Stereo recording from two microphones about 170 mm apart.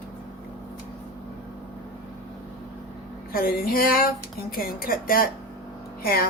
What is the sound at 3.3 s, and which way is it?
A woman's voice, 60° left (ahead or behind).